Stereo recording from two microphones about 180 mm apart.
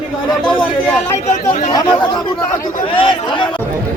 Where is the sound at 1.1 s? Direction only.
40° left (ahead or behind).